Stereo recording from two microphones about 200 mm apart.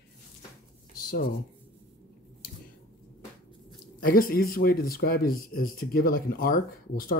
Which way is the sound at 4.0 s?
45° left (ahead or behind).